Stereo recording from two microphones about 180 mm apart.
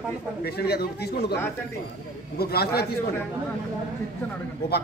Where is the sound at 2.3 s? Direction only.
60° left (ahead or behind).